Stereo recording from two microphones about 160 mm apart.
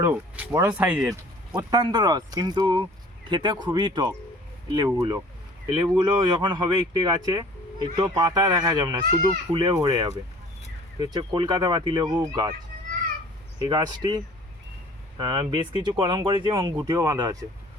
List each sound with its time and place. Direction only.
0.0 s speech: 15° right (ahead or behind)
1.5 s speech: 25° right (ahead or behind)
13.6 s speech: 25° right (ahead or behind)
15.2 s speech: 30° right (ahead or behind)